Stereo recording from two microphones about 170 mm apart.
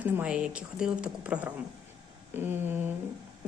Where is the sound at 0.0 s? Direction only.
5° right (ahead or behind).